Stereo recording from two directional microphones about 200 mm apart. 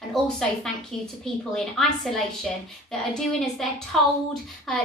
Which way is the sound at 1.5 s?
Centre (ahead or behind).